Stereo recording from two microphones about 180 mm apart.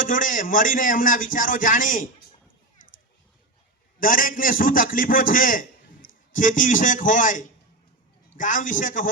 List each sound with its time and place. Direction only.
0.0 s a man's voice: 50° left (ahead or behind)
4.0 s a man's voice: 50° left (ahead or behind)